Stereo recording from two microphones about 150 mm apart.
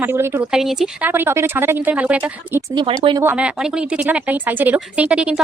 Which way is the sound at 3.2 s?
10° right (ahead or behind).